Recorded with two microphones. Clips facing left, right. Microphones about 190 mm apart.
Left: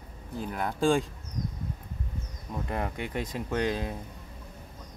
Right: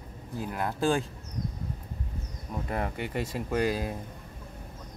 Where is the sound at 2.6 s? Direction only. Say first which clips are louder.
Right 1 dB; 5° right (ahead or behind).